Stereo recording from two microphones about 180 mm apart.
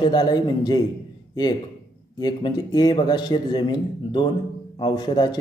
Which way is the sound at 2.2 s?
25° left (ahead or behind).